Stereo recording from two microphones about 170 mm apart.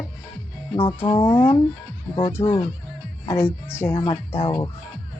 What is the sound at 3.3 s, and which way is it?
Speech, 15° left (ahead or behind).